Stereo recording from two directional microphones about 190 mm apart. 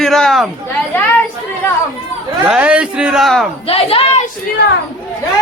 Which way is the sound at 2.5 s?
5° right (ahead or behind).